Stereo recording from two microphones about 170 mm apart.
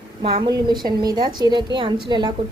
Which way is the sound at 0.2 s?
35° right (ahead or behind).